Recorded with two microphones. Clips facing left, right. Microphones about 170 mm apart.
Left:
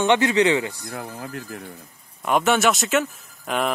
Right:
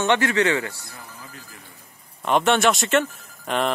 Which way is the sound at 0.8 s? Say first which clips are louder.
Left 10 dB; 60° left (ahead or behind).